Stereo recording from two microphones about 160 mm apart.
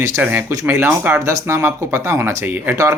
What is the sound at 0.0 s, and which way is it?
Speech, 15° right (ahead or behind).